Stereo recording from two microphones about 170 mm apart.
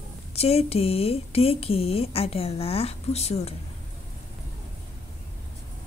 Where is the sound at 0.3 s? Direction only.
35° left (ahead or behind).